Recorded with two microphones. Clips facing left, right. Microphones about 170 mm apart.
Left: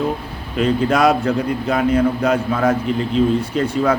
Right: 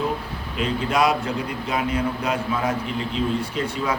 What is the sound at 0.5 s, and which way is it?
A man's voice, 45° left (ahead or behind).